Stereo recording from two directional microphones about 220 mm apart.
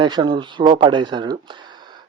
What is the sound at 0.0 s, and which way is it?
Speech, 20° right (ahead or behind).